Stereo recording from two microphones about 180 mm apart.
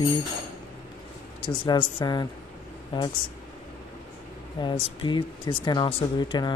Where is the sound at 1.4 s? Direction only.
25° left (ahead or behind).